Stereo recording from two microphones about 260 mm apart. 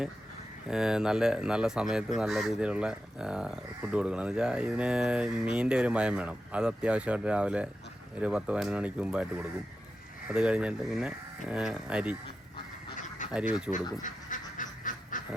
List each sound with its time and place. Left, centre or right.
0.7 s speech: centre
13.7 s speech: centre
14.0 s duck: left